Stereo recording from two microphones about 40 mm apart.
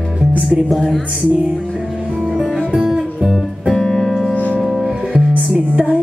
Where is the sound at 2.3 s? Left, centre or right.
Centre.